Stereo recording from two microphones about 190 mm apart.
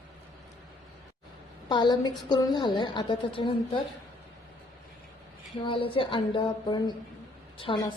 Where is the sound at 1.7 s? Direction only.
20° left (ahead or behind).